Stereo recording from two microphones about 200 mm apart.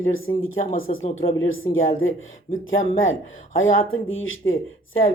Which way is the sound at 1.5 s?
80° left.